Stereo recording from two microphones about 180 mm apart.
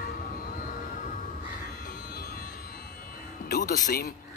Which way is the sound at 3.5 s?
50° left (ahead or behind).